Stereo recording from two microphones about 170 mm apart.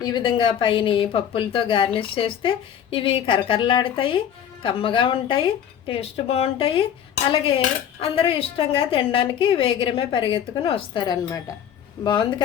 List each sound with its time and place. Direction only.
0.0 s a woman's voice: 25° left (ahead or behind)